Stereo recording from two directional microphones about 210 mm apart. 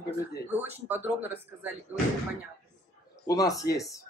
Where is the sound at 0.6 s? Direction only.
10° right (ahead or behind).